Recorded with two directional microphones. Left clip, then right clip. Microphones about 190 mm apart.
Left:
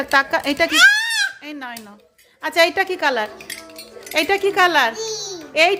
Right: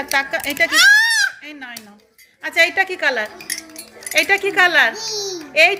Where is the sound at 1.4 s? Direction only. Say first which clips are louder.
Left 2 dB; 40° left (ahead or behind).